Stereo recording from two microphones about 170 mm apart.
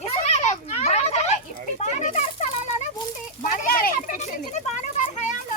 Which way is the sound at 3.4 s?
55° left (ahead or behind).